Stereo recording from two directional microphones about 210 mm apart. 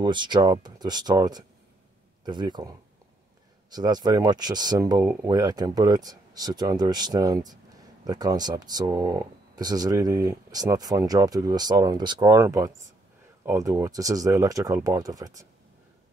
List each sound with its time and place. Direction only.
0.0 s speech: 20° right (ahead or behind)
3.7 s speech: 20° right (ahead or behind)